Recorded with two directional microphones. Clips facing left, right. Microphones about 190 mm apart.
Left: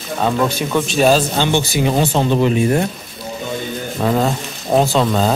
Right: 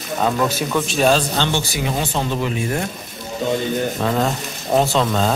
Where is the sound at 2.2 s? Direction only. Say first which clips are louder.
Left 7 dB; 25° left (ahead or behind).